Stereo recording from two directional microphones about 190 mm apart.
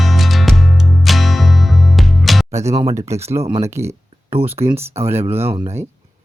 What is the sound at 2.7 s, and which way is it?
Speech, 15° right (ahead or behind).